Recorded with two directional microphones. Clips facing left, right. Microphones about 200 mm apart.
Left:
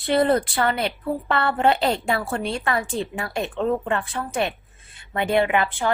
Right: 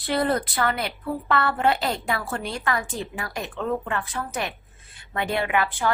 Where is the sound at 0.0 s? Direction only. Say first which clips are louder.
Left 4 dB; 25° left (ahead or behind).